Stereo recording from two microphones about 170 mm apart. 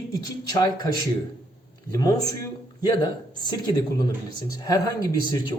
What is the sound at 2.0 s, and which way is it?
Speech, 20° left (ahead or behind).